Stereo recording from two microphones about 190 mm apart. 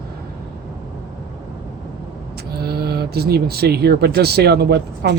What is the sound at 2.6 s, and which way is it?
Speech, 55° right (ahead or behind).